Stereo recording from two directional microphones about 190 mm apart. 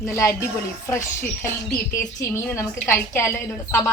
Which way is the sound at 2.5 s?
15° left (ahead or behind).